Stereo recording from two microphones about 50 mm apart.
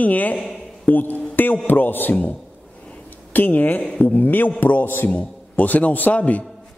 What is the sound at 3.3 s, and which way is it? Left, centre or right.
A man's voice, left.